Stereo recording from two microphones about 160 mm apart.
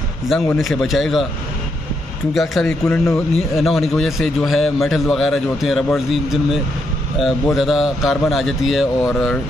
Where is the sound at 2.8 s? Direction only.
15° left (ahead or behind).